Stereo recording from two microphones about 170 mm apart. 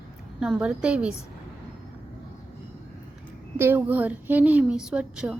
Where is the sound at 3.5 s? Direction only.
15° right (ahead or behind).